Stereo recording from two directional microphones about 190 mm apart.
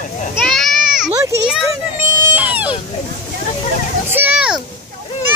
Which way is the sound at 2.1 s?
15° right (ahead or behind).